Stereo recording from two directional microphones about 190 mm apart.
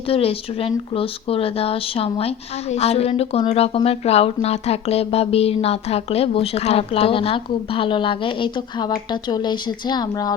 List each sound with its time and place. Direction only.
0.1 s speech: 30° left (ahead or behind)